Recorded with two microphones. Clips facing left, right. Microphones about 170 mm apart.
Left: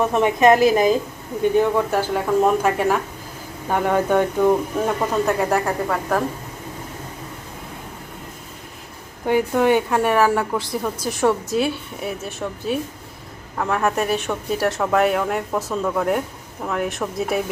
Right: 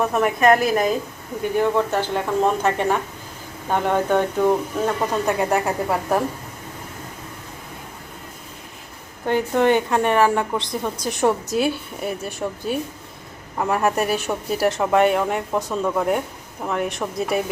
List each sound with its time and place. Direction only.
0.2 s a woman's voice: 25° left (ahead or behind)
0.5 s speech: centre (ahead or behind)
5.6 s a woman's voice: 20° right (ahead or behind)
9.2 s speech: 10° left (ahead or behind)
13.6 s speech: 10° right (ahead or behind)